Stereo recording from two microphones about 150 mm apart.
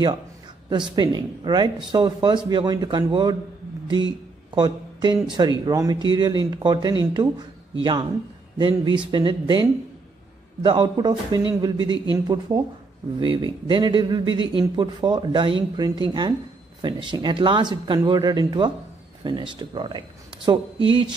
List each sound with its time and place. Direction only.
0.7 s a man's voice: 30° right (ahead or behind)